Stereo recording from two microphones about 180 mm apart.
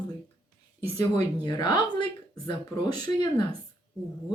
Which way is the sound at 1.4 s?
25° left (ahead or behind).